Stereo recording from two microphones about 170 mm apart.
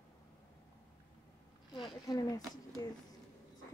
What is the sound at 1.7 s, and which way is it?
Speech, 25° left (ahead or behind).